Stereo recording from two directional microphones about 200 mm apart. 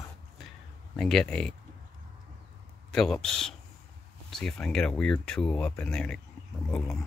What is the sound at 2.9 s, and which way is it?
Speech, centre (ahead or behind).